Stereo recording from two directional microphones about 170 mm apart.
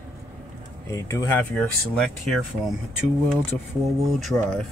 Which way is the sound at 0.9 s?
15° left (ahead or behind).